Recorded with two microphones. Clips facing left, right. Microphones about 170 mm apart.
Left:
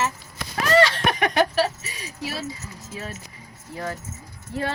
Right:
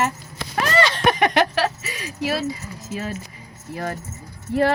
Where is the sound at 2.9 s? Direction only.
90° right.